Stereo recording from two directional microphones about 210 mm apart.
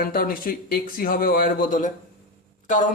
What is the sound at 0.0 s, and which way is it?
A man's voice, 45° left (ahead or behind).